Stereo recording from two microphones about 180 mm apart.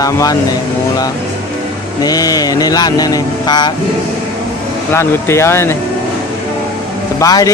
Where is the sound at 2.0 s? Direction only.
20° left (ahead or behind).